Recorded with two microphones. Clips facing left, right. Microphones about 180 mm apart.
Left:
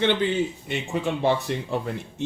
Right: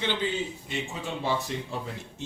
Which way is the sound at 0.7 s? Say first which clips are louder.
Left 7 dB; 65° left (ahead or behind).